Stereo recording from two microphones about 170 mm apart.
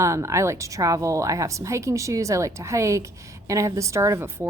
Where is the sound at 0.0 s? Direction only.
15° right (ahead or behind).